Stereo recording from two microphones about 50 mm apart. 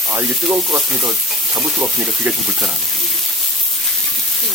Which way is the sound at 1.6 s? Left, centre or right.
Centre.